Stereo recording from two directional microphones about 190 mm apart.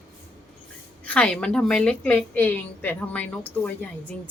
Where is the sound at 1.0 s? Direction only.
5° left (ahead or behind).